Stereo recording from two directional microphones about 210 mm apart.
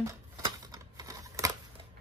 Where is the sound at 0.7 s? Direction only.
15° right (ahead or behind).